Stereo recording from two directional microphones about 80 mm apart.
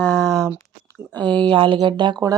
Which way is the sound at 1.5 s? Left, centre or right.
Right.